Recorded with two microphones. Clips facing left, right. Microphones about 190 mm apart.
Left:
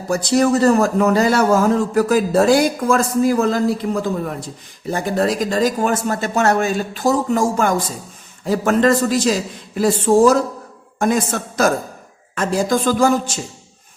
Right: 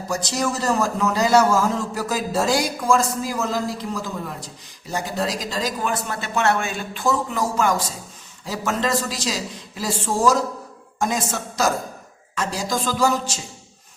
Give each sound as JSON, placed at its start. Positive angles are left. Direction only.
{"t": 0.1, "sound": "a man's voice", "side_deg": 55}